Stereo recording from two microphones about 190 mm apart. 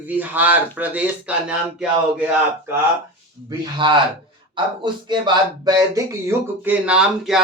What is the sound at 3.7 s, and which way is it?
Speech, 25° right (ahead or behind).